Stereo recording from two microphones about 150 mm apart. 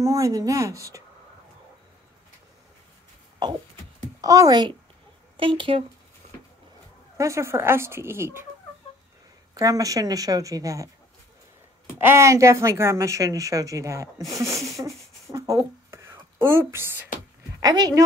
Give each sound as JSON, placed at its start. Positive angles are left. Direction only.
{"t": 0.0, "sound": "a woman's voice", "side_deg": -20}
{"t": 3.4, "sound": "a sound", "side_deg": -25}
{"t": 4.2, "sound": "a woman's voice", "side_deg": -25}
{"t": 7.2, "sound": "speech", "side_deg": -20}
{"t": 9.6, "sound": "a woman's voice", "side_deg": -25}
{"t": 12.0, "sound": "a woman's voice", "side_deg": -15}
{"t": 14.8, "sound": "a sound", "side_deg": -20}
{"t": 16.3, "sound": "speech", "side_deg": -15}
{"t": 17.6, "sound": "a woman's voice", "side_deg": -25}